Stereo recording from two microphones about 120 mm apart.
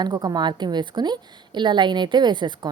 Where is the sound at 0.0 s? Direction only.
30° right (ahead or behind).